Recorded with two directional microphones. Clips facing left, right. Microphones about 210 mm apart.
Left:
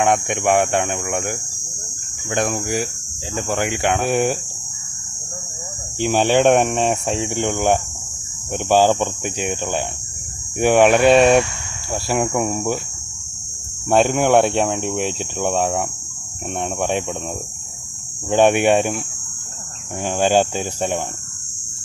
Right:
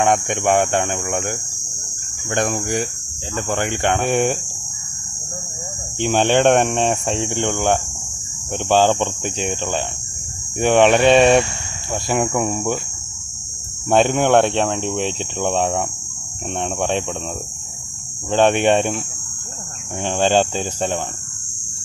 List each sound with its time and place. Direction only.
0.0 s speech: centre (ahead or behind)
2.3 s speech: centre (ahead or behind)
5.9 s speech: 5° left (ahead or behind)
13.8 s speech: 5° left (ahead or behind)
18.3 s speech: 10° left (ahead or behind)
20.0 s speech: 10° left (ahead or behind)